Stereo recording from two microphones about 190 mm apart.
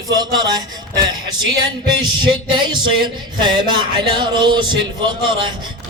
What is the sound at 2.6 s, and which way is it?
Music, 25° right (ahead or behind).